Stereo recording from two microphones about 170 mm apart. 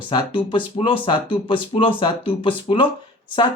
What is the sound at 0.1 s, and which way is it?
Speech, 25° left (ahead or behind).